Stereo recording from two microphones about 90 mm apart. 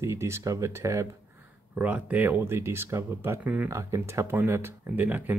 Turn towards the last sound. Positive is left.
turn(degrees=-20)  # may be behind; listen again after turning